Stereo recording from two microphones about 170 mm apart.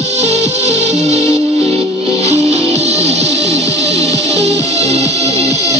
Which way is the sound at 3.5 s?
20° left (ahead or behind).